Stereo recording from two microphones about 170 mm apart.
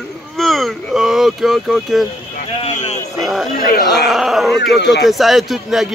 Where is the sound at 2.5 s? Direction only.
40° left (ahead or behind).